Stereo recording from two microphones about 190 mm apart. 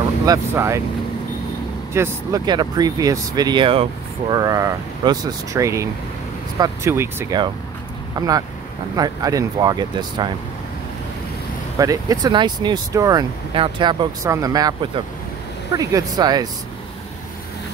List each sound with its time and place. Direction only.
0.3 s speech: 15° right (ahead or behind)
2.0 s speech: 20° right (ahead or behind)
11.8 s speech: 20° right (ahead or behind)